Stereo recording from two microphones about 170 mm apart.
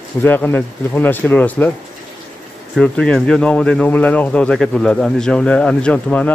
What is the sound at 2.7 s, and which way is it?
Speech, 5° left (ahead or behind).